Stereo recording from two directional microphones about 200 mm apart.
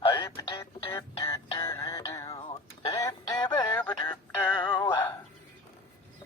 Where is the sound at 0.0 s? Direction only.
20° left (ahead or behind).